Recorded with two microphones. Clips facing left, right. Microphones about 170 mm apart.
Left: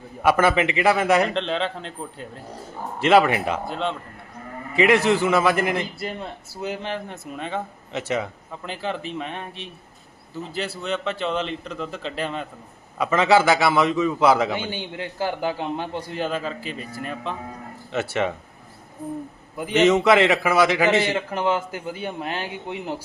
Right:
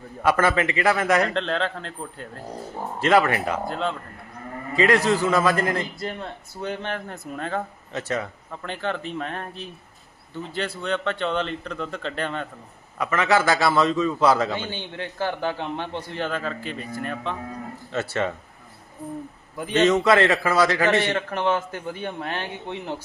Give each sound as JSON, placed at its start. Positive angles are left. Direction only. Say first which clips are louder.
{"t": 0.2, "sound": "a man's voice", "louder": "left 2 dB", "side_deg": 25}
{"t": 1.4, "sound": "speech", "louder": "even", "side_deg": 0}
{"t": 3.0, "sound": "a man's voice", "louder": "left 2 dB", "side_deg": 20}
{"t": 3.7, "sound": "speech", "louder": "even", "side_deg": 0}
{"t": 5.2, "sound": "a man's voice", "louder": "left 1 dB", "side_deg": 20}
{"t": 6.0, "sound": "speech", "louder": "even", "side_deg": 5}
{"t": 7.9, "sound": "a man's voice", "louder": "left 2 dB", "side_deg": 20}
{"t": 8.6, "sound": "speech", "louder": "even", "side_deg": 5}
{"t": 13.0, "sound": "a man's voice", "louder": "left 3 dB", "side_deg": 25}
{"t": 18.0, "sound": "a man's voice", "louder": "left 2 dB", "side_deg": 20}
{"t": 19.5, "sound": "a man's voice", "louder": "left 2 dB", "side_deg": 15}
{"t": 20.8, "sound": "a man's voice", "louder": "left 1 dB", "side_deg": 5}